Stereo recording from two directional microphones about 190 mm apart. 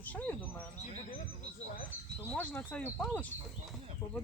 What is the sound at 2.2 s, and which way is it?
Speech, 10° left (ahead or behind).